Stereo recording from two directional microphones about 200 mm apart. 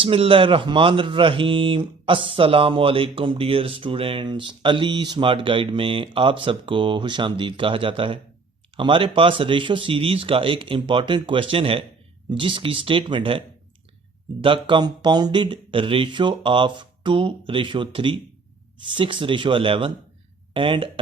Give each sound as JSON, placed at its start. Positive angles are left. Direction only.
{"t": 0.0, "sound": "speech", "side_deg": -25}
{"t": 14.4, "sound": "speech", "side_deg": -25}